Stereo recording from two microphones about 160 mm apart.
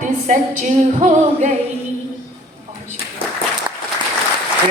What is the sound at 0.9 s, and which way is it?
A capella, 50° right (ahead or behind).